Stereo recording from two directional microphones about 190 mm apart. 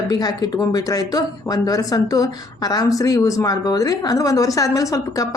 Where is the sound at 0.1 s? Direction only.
20° left (ahead or behind).